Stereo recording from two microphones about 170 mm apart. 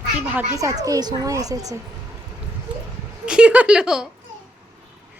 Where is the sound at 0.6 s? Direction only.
20° right (ahead or behind).